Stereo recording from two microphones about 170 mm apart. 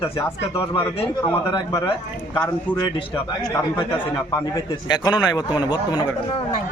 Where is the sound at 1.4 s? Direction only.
25° left (ahead or behind).